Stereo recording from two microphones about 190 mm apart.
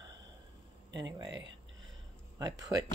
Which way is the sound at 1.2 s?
70° right (ahead or behind).